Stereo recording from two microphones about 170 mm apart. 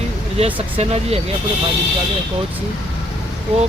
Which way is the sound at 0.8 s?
35° right (ahead or behind).